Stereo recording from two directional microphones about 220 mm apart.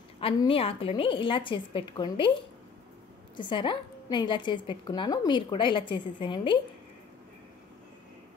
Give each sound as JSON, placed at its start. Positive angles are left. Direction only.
{"t": 0.2, "sound": "a woman's voice", "side_deg": 25}
{"t": 3.3, "sound": "a woman's voice", "side_deg": 20}